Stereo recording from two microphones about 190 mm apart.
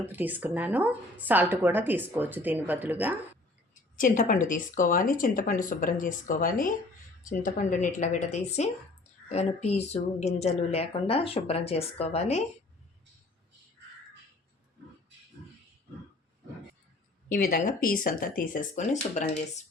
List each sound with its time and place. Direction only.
0.0 s speech: 10° right (ahead or behind)
4.0 s a woman's voice: 45° left (ahead or behind)
17.2 s a woman's voice: 50° left (ahead or behind)